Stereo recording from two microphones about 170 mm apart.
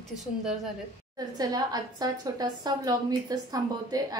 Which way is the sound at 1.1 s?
25° right (ahead or behind).